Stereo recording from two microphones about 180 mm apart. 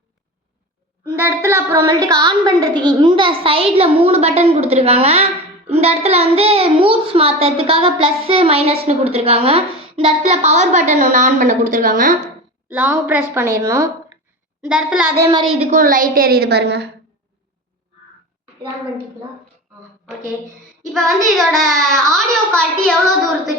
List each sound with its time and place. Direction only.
1.1 s a woman's voice: 10° right (ahead or behind); by 12.1 s 50° right (ahead or behind)
12.2 s a woman's voice: 10° right (ahead or behind)
14.7 s a woman's voice: 5° right (ahead or behind)
15.2 s a woman's voice: 25° right (ahead or behind)
15.5 s a woman's voice: 45° right (ahead or behind); by 16.9 s 65° right (ahead or behind)
21.3 s a child's voice: centre (ahead or behind)